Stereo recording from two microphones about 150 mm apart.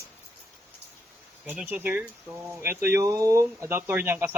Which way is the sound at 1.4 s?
15° right (ahead or behind).